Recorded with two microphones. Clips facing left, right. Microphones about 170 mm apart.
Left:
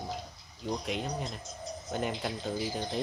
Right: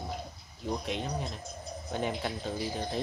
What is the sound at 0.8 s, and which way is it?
Speech, centre (ahead or behind).